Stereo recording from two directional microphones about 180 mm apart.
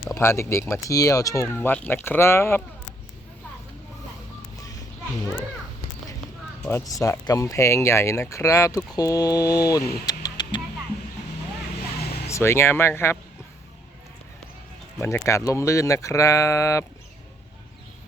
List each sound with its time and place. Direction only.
0.1 s speech: 15° left (ahead or behind)
4.5 s a sound: 20° left (ahead or behind)
6.7 s speech: 15° left (ahead or behind)
10.1 s a sound: 20° left (ahead or behind)
12.3 s speech: 15° left (ahead or behind)
15.0 s speech: 15° left (ahead or behind)